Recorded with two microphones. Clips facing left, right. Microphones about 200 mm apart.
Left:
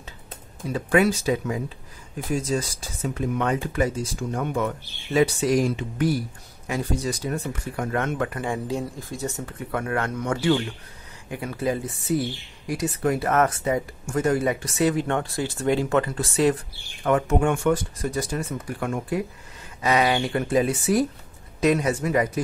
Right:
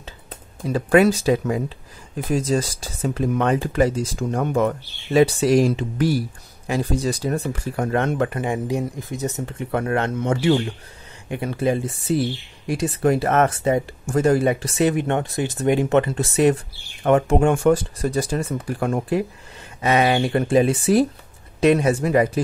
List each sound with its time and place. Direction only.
2.5 s speech: 35° right (ahead or behind)